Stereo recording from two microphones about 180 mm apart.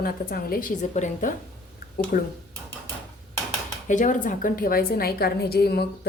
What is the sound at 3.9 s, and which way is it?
A woman's voice, 45° left (ahead or behind).